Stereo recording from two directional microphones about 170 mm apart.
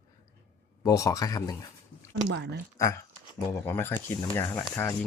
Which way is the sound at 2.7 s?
20° left (ahead or behind).